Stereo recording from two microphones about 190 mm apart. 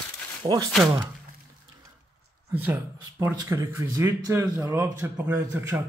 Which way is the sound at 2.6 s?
10° right (ahead or behind).